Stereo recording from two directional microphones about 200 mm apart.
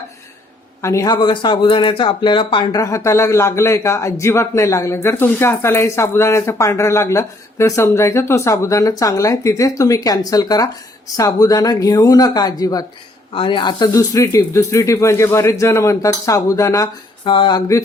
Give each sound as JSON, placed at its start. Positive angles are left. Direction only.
{"t": 0.8, "sound": "speech", "side_deg": 15}